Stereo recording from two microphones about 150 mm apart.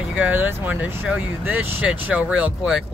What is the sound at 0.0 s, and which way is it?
Speech, 10° right (ahead or behind).